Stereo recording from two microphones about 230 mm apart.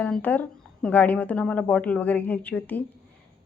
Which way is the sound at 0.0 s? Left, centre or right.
Centre.